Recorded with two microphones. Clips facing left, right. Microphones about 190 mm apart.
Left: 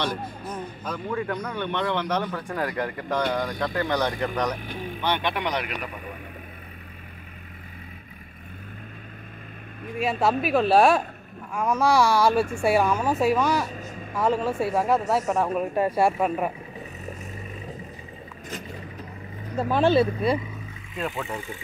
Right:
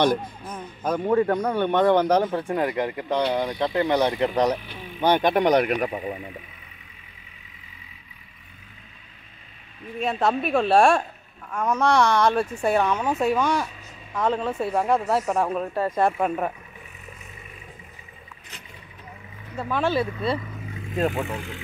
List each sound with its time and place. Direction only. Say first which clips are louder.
0.8 s speech: right 9 dB; 45° right (ahead or behind)
2.4 s speech: right 4 dB; 20° right (ahead or behind)
5.0 s speech: right 8 dB; 40° right (ahead or behind)
9.9 s speech: even; 5° left (ahead or behind)
15.7 s speech: left 1 dB; 10° left (ahead or behind)
19.5 s speech: left 4 dB; 40° left (ahead or behind)
20.2 s speech: left 2 dB; 20° left (ahead or behind)
20.9 s speech: right 7 dB; 45° right (ahead or behind)